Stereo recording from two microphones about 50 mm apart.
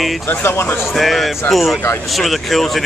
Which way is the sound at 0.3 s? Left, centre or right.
Left.